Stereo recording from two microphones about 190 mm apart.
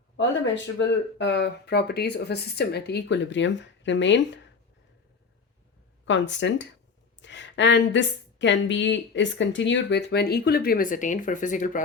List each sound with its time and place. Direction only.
0.2 s speech: 75° left (ahead or behind)
6.1 s speech: 70° left (ahead or behind); by 11.8 s 40° left (ahead or behind)